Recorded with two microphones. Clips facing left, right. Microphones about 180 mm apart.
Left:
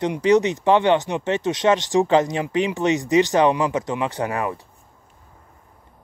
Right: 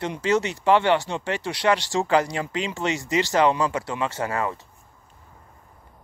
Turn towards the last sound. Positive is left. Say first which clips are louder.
# left 2 dB
turn(degrees=15)  # may be behind; listen again after turning